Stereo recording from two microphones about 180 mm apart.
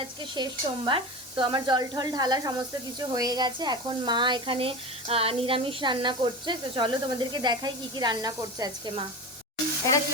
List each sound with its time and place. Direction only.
0.3 s speech: 25° right (ahead or behind)